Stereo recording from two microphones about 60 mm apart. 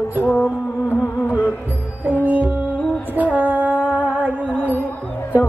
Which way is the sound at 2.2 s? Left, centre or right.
Right.